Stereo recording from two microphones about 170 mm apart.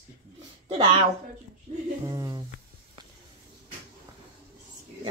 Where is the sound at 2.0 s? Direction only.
20° right (ahead or behind).